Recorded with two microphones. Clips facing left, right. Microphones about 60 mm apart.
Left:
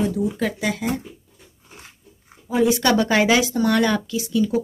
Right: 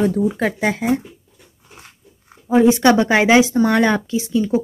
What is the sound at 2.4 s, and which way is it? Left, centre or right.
Speech, right.